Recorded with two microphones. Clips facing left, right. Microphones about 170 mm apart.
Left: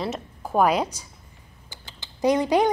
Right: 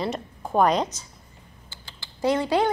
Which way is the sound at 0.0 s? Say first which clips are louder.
Right 1 dB; 5° left (ahead or behind).